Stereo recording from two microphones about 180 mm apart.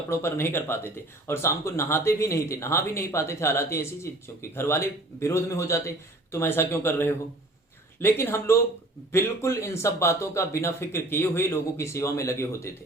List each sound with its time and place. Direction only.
0.1 s speech: 15° left (ahead or behind)